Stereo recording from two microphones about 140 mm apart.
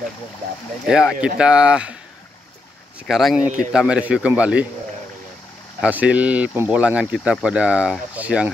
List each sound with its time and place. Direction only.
0.8 s speech: 5° right (ahead or behind)
3.0 s speech: centre (ahead or behind)
5.8 s speech: 10° right (ahead or behind)